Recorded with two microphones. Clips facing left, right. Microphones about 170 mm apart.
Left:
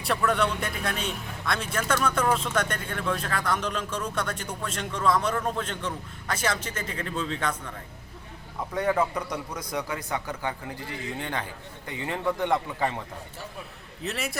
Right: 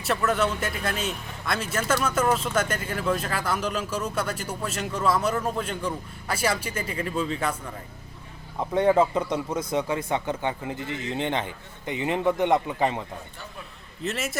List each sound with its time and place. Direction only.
0.0 s speech: centre (ahead or behind)
8.7 s speech: 25° right (ahead or behind)
14.0 s a man's voice: centre (ahead or behind)